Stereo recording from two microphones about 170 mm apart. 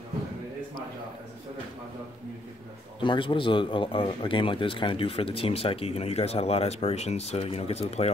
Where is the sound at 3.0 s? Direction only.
30° left (ahead or behind).